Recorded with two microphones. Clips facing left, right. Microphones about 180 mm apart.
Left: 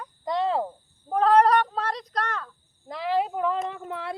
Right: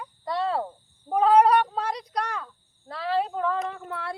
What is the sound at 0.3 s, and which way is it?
Cricket, 20° left (ahead or behind).